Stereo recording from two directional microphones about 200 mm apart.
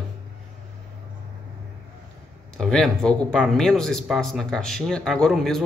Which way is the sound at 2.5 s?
5° left (ahead or behind).